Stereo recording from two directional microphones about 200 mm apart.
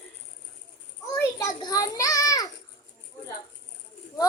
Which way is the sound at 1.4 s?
15° left (ahead or behind).